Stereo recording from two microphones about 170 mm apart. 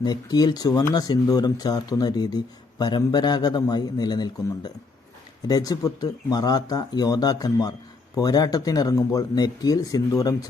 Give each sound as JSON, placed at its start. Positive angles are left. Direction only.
{"t": 0.0, "sound": "speech", "side_deg": 25}